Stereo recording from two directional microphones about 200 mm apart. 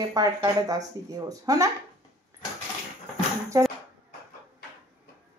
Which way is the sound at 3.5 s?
15° right (ahead or behind).